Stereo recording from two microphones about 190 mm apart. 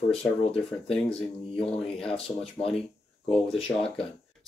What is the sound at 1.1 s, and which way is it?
Speech, 30° left (ahead or behind).